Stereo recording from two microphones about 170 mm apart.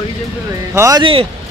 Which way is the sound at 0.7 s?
20° right (ahead or behind).